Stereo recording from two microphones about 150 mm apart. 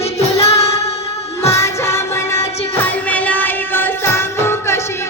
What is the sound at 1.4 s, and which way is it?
Music, 20° left (ahead or behind).